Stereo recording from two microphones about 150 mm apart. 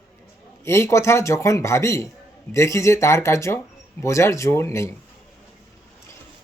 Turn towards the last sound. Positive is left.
turn(degrees=20)  # may be behind; listen again after turning